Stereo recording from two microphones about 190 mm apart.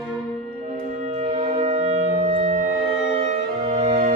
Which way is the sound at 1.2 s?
30° right (ahead or behind).